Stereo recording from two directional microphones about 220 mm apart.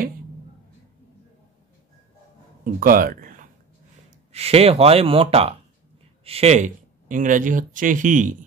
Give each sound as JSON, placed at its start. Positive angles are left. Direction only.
{"t": 2.6, "sound": "speech", "side_deg": -40}
{"t": 4.3, "sound": "speech", "side_deg": -30}